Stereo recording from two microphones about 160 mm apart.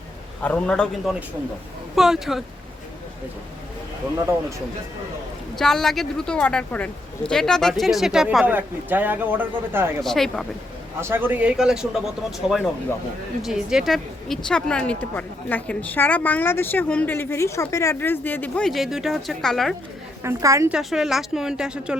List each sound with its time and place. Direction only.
0.4 s speech: 5° left (ahead or behind)
5.5 s speech: 5° left (ahead or behind); by 9.9 s 15° right (ahead or behind)
10.0 s speech: centre (ahead or behind)
11.0 s a man's voice: 15° right (ahead or behind); by 19.7 s centre (ahead or behind)
20.2 s a woman's voice: 20° right (ahead or behind)
20.7 s speech: centre (ahead or behind)